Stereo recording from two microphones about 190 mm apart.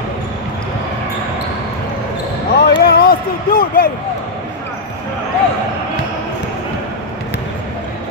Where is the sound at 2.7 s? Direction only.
55° left (ahead or behind).